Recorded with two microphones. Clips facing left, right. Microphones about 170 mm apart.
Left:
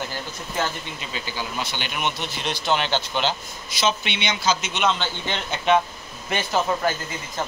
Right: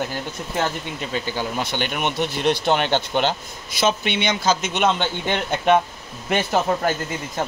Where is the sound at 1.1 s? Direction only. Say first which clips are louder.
Right 5 dB; 50° right (ahead or behind).